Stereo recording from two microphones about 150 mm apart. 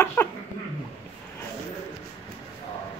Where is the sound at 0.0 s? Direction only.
15° left (ahead or behind).